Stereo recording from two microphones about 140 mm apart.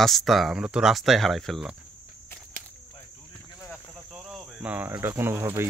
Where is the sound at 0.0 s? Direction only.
Centre (ahead or behind).